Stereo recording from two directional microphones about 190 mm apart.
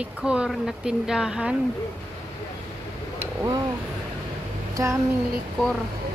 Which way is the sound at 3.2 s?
15° right (ahead or behind).